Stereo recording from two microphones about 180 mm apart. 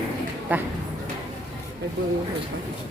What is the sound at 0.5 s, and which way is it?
Speech, 10° right (ahead or behind).